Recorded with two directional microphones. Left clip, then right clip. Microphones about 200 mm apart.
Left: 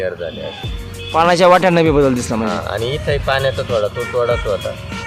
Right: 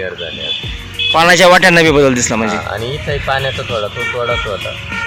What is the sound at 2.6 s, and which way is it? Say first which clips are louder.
Speech: even; 30° left (ahead or behind).